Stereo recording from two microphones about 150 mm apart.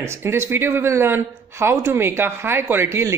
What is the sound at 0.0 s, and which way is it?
Speech, 15° right (ahead or behind).